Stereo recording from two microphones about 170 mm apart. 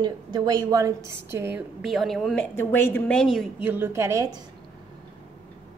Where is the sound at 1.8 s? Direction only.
Centre (ahead or behind).